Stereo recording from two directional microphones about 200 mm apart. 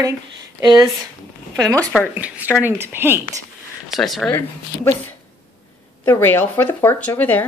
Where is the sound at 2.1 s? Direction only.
5° right (ahead or behind).